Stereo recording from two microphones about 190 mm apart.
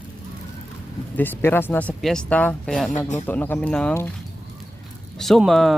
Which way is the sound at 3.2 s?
10° left (ahead or behind).